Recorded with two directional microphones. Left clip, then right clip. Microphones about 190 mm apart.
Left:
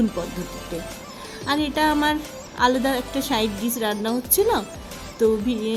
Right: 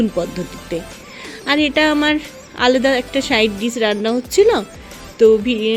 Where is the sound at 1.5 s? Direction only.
20° right (ahead or behind).